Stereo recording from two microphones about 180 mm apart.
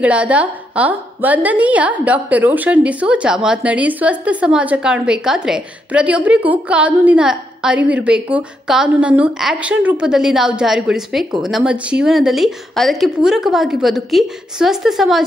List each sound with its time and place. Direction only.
0.0 s a woman's voice: 5° right (ahead or behind)